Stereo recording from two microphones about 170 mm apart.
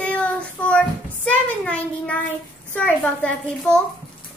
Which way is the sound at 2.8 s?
10° left (ahead or behind).